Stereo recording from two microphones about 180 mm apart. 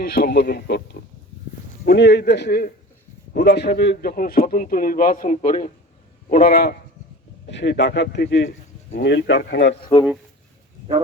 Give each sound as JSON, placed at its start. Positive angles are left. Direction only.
{"t": 0.1, "sound": "a man's voice", "side_deg": 60}
{"t": 6.2, "sound": "speech", "side_deg": 55}
{"t": 7.4, "sound": "speech", "side_deg": 70}